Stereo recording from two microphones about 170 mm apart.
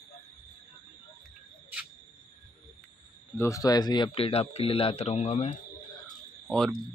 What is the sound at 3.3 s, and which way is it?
Speech, 20° left (ahead or behind).